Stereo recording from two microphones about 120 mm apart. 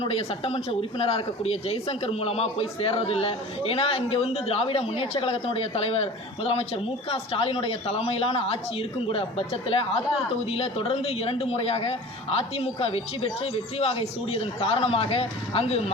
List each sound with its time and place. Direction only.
0.0 s speech: 55° left (ahead or behind)